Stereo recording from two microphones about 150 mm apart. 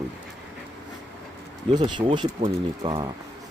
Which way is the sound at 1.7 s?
30° right (ahead or behind).